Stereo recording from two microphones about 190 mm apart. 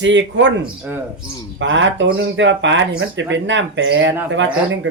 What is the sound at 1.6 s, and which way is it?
Speech, 75° right (ahead or behind).